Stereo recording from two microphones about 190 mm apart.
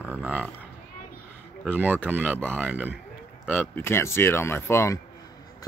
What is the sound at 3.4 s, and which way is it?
Speech, 10° left (ahead or behind).